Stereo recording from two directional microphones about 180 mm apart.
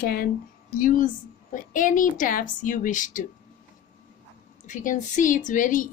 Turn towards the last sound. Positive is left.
turn(degrees=45)  # may be behind; listen again after turning